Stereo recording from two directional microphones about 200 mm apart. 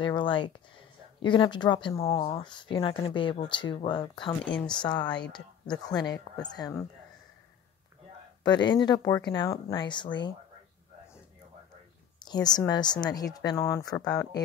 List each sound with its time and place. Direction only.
0.0 s speech: 25° left (ahead or behind)
4.5 s speech: 5° left (ahead or behind)
4.8 s speech: 20° left (ahead or behind)
8.5 s speech: 20° left (ahead or behind)
12.3 s speech: 20° left (ahead or behind)